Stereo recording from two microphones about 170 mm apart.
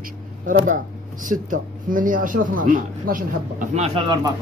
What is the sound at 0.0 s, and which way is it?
Speech, 50° right (ahead or behind).